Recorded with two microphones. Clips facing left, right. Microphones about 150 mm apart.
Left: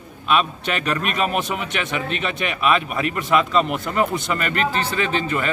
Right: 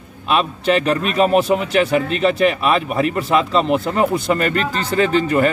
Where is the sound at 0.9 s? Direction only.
35° right (ahead or behind).